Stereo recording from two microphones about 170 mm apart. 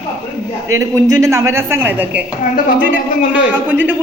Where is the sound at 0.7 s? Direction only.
20° right (ahead or behind).